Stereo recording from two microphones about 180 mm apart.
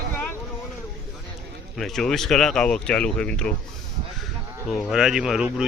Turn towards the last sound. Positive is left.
turn(degrees=-5)  # may be behind; listen again after turning